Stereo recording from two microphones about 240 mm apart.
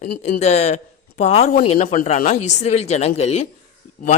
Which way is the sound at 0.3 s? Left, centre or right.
Left.